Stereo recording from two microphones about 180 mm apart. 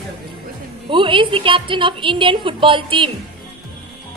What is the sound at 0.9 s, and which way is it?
A woman's voice, 30° right (ahead or behind).